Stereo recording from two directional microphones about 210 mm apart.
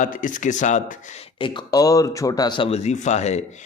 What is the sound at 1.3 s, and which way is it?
Speech, 25° left (ahead or behind).